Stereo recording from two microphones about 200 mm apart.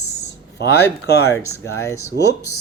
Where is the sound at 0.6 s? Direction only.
55° left (ahead or behind).